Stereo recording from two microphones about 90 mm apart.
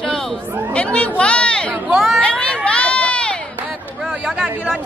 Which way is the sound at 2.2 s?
10° left (ahead or behind).